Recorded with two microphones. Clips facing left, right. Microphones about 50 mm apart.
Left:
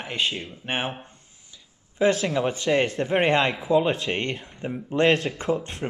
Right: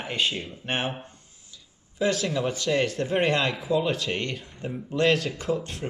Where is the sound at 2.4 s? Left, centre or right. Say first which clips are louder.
Left 3 dB; left.